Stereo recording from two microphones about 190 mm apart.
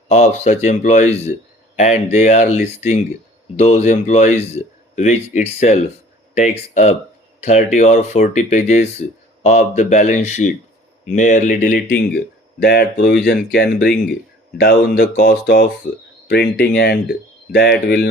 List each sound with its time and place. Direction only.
0.1 s speech: 35° left (ahead or behind); by 18.1 s 55° left (ahead or behind)